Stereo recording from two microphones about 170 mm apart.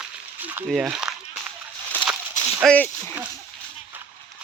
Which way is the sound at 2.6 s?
10° left (ahead or behind).